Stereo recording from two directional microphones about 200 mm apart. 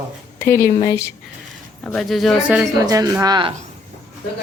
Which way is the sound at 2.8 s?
20° right (ahead or behind).